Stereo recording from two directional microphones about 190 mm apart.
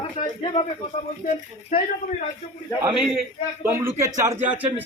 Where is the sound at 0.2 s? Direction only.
40° left (ahead or behind).